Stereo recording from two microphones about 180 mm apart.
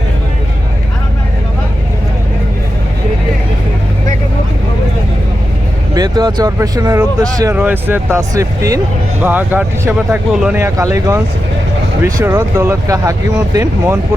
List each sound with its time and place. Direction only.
5.9 s speech: 20° right (ahead or behind)
7.5 s speech: 10° right (ahead or behind)